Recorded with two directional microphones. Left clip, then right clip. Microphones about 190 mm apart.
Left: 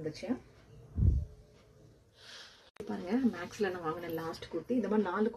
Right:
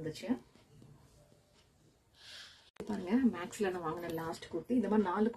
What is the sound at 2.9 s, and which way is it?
Speech, 15° right (ahead or behind).